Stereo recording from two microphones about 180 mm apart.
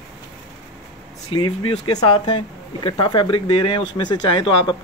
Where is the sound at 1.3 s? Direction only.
25° left (ahead or behind).